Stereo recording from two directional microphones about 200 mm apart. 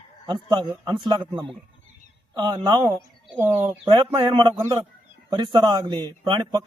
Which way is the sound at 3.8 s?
25° right (ahead or behind).